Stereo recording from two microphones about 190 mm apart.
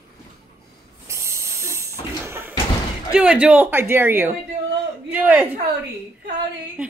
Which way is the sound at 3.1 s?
5° right (ahead or behind).